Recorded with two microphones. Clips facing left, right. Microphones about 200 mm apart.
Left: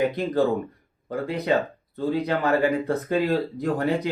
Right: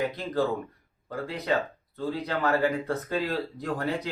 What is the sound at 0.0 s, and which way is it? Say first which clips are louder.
Speech: left 5 dB; 20° left (ahead or behind).